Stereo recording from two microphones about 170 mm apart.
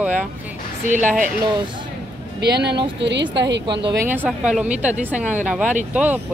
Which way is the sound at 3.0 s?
90° right.